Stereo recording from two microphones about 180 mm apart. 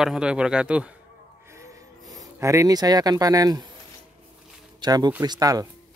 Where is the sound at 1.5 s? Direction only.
15° right (ahead or behind).